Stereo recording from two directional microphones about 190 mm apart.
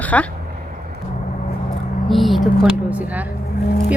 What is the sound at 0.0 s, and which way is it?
Speech, 10° left (ahead or behind).